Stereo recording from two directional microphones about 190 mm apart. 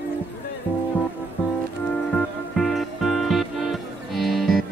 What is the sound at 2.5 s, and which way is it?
Music, centre (ahead or behind).